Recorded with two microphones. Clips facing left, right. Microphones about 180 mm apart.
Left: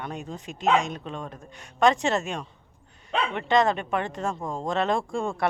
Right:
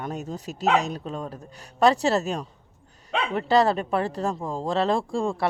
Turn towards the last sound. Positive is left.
turn(degrees=-30)  # may be behind; listen again after turning